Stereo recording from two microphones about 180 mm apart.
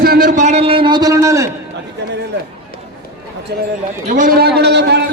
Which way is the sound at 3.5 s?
65° right (ahead or behind).